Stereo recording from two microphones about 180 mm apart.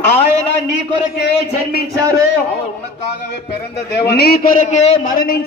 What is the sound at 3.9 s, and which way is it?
A man's voice, 65° left (ahead or behind).